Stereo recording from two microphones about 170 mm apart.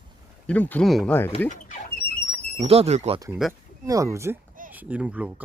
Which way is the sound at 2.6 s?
35° right (ahead or behind).